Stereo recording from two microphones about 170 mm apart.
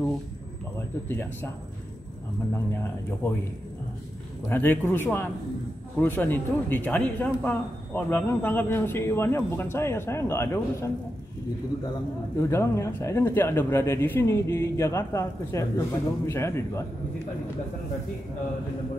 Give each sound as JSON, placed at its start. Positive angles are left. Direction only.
{"t": 1.0, "sound": "a man's voice", "side_deg": 10}
{"t": 2.5, "sound": "a man's voice", "side_deg": 15}
{"t": 4.5, "sound": "a man's voice", "side_deg": 10}
{"t": 12.4, "sound": "a man's voice", "side_deg": 15}